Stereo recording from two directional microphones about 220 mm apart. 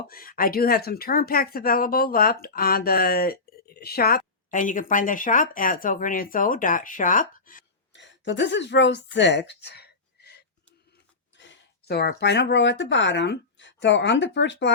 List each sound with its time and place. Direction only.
0.1 s speech: 40° left (ahead or behind)
7.9 s speech: 55° left (ahead or behind)